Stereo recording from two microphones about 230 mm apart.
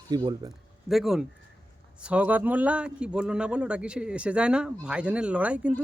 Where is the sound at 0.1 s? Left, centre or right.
Centre.